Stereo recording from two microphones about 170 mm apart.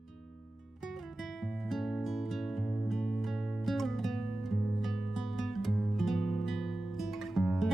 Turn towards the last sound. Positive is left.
turn(degrees=0)  # may be behind; listen again after turning